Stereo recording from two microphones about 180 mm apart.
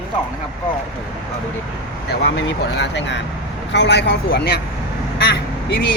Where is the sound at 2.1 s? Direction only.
75° left (ahead or behind).